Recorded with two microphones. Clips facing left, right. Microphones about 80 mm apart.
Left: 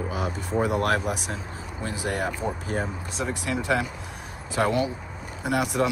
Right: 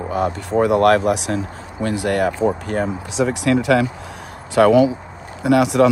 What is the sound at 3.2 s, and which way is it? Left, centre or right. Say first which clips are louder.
Speech: right 11 dB; right.